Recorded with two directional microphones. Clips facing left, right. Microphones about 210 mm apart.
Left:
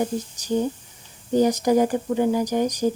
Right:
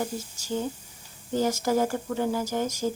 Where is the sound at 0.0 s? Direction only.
20° left (ahead or behind).